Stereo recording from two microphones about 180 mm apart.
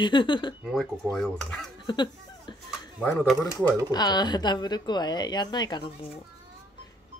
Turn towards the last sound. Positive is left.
turn(degrees=25)  # may be behind; listen again after turning